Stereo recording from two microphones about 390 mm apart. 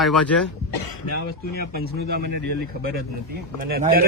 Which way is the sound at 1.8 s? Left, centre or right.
Right.